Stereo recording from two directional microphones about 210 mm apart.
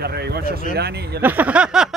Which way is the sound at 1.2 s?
10° right (ahead or behind).